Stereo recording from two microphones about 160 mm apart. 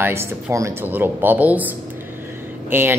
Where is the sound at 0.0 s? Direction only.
15° right (ahead or behind).